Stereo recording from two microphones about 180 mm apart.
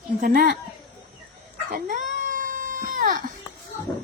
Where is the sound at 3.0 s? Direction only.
50° right (ahead or behind).